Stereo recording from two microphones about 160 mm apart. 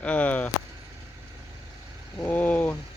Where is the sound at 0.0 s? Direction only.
10° left (ahead or behind).